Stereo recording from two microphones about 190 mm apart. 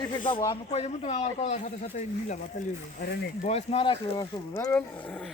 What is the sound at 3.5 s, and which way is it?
Speech, 30° left (ahead or behind).